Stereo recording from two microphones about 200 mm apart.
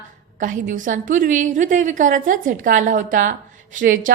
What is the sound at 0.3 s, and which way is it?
A woman's voice, 40° right (ahead or behind).